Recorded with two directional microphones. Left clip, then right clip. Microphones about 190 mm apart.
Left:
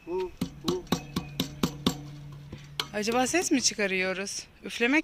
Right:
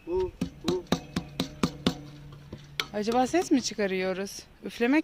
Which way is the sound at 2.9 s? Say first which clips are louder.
Right 1 dB; 15° right (ahead or behind).